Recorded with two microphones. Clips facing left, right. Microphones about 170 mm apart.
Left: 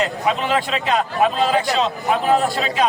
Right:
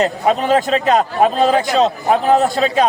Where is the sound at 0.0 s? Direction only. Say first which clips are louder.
Right 5 dB; 40° right (ahead or behind).